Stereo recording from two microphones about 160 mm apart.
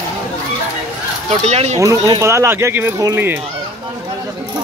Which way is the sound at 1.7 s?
20° right (ahead or behind).